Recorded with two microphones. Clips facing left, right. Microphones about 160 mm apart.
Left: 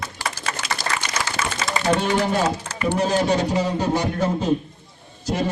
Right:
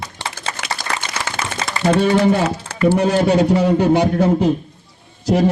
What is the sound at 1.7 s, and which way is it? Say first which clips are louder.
A man's voice: right 6 dB; 60° right (ahead or behind).